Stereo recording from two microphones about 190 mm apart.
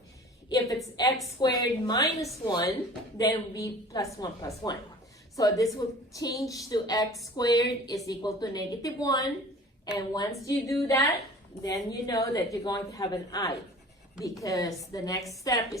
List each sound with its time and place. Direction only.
0.5 s a woman's voice: 15° left (ahead or behind)